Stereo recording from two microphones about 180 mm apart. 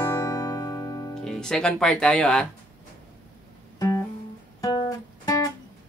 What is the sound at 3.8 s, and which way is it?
Music, 20° left (ahead or behind).